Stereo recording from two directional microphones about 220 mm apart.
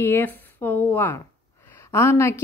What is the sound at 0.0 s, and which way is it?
A woman's voice, 10° left (ahead or behind).